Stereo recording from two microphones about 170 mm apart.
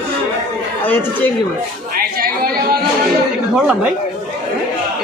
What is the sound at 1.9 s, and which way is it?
Chatter, 60° right (ahead or behind).